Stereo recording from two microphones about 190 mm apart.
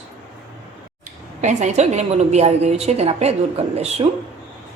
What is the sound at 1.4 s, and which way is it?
A woman's voice, 40° right (ahead or behind).